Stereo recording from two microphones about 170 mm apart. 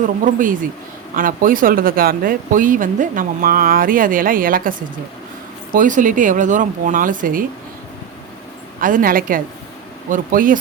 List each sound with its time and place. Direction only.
0.0 s speech: 50° right (ahead or behind)
8.8 s speech: 55° right (ahead or behind)